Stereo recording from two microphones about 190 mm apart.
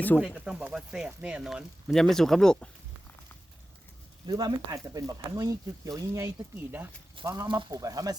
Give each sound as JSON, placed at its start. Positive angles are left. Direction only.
{"t": 0.2, "sound": "speech", "side_deg": -5}
{"t": 4.3, "sound": "speech", "side_deg": -20}